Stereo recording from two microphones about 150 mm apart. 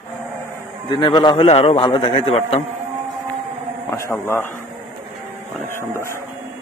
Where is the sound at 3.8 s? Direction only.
20° left (ahead or behind).